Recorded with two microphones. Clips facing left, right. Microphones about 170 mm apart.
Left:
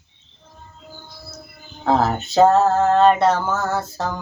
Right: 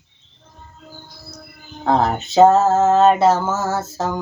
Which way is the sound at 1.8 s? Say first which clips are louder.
Right 1 dB; centre (ahead or behind).